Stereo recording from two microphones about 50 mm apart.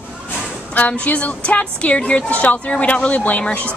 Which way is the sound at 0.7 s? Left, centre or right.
Left.